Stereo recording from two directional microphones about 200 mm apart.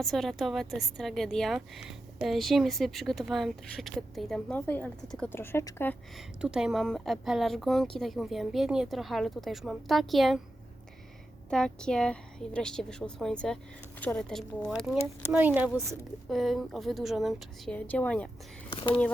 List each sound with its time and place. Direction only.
0.0 s speech: centre (ahead or behind)
6.1 s speech: 5° right (ahead or behind)
11.5 s speech: 5° left (ahead or behind)
15.3 s speech: 10° right (ahead or behind)
18.7 s speech: 25° left (ahead or behind)